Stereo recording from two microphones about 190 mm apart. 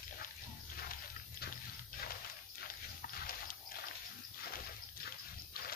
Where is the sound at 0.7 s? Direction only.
50° left (ahead or behind).